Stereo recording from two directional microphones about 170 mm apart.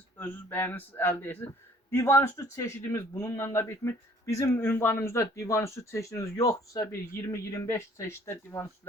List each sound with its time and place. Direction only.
0.2 s a man's voice: 10° left (ahead or behind)